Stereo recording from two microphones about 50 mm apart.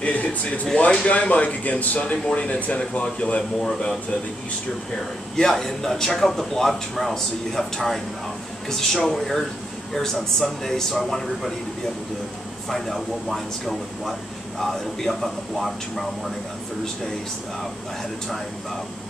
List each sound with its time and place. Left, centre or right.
0.0 s a sound: left
0.7 s speech: left
3.6 s speech: centre
5.4 s speech: centre
12.6 s speech: centre